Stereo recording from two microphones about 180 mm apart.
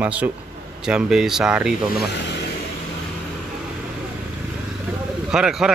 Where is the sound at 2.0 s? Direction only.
70° left (ahead or behind).